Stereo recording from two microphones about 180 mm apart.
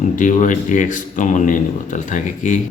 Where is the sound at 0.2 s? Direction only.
45° left (ahead or behind).